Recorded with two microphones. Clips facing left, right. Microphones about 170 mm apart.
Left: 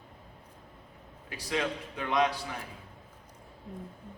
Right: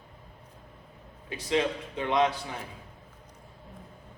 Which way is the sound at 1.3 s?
25° right (ahead or behind).